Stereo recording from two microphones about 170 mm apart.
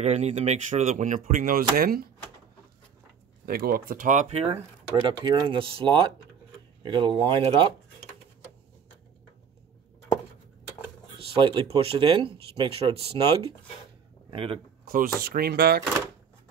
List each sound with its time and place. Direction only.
0.0 s speech: 40° right (ahead or behind); by 2.0 s 60° right (ahead or behind)
3.4 s speech: 60° right (ahead or behind); by 7.4 s 30° right (ahead or behind)
11.3 s speech: 30° right (ahead or behind)
14.3 s speech: 30° right (ahead or behind)
14.9 s speech: 60° right (ahead or behind)